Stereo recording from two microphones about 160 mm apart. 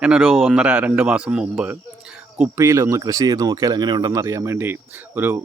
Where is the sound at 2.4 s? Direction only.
20° right (ahead or behind).